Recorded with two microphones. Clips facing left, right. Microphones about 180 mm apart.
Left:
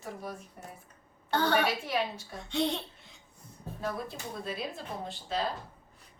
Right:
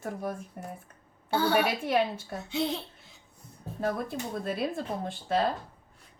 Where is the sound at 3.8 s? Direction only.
50° right (ahead or behind).